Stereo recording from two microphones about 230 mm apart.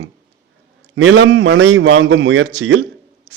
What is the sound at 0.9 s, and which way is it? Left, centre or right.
A man's voice, right.